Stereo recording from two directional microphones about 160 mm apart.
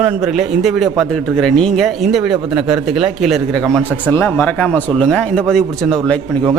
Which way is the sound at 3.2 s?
Centre (ahead or behind).